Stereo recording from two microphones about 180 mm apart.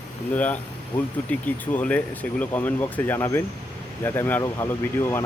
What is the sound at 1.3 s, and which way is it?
Speech, 10° left (ahead or behind).